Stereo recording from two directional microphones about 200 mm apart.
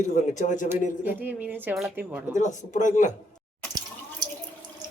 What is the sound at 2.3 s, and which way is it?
Speech, 40° left (ahead or behind).